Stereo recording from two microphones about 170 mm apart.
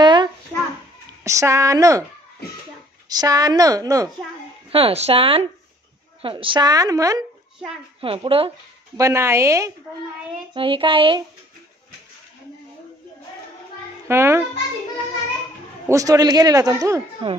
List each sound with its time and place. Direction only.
0.0 s a sound: 25° right (ahead or behind)
1.2 s a man's voice: 20° right (ahead or behind)
3.1 s a man's voice: 20° right (ahead or behind)
4.6 s a man's voice: 35° right (ahead or behind)
8.0 s speech: 35° right (ahead or behind)
8.9 s speech: 15° right (ahead or behind)
10.5 s speech: 30° right (ahead or behind)
14.0 s speech: 15° right (ahead or behind)
15.9 s a man's voice: 20° right (ahead or behind)
17.2 s a man's voice: 30° right (ahead or behind)